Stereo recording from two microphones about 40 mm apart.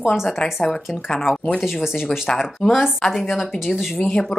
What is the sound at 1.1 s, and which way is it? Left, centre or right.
Speech, centre.